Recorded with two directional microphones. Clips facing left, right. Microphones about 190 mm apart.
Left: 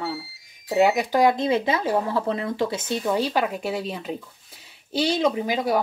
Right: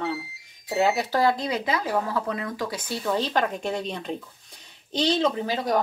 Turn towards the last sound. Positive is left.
turn(degrees=10)  # may be behind; listen again after turning